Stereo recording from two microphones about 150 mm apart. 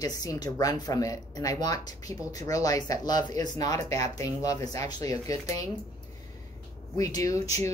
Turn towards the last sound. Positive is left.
turn(degrees=25)  # may be behind; listen again after turning